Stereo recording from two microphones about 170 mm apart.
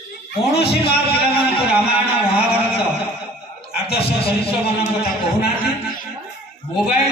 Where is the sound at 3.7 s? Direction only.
35° left (ahead or behind).